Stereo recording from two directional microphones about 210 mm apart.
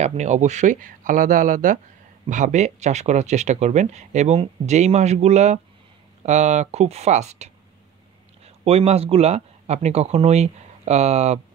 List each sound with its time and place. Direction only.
0.0 s speech: 35° right (ahead or behind)
8.6 s speech: 30° right (ahead or behind)